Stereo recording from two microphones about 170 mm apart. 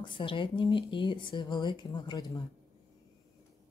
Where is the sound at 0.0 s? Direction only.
30° left (ahead or behind).